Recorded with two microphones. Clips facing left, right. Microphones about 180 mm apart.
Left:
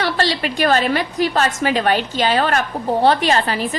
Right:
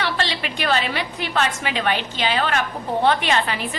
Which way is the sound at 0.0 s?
40° left (ahead or behind).